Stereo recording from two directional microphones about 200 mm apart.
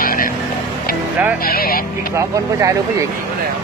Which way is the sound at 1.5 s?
50° left (ahead or behind).